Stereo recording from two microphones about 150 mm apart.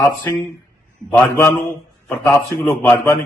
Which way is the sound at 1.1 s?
15° left (ahead or behind).